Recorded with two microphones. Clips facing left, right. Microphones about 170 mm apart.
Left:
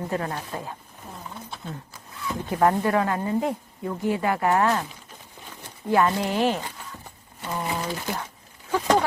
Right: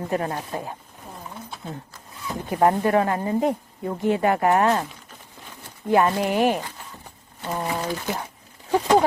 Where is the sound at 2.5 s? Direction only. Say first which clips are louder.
Right 2 dB; 25° right (ahead or behind).